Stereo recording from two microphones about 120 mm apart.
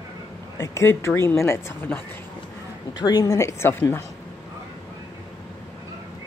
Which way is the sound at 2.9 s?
35° left (ahead or behind).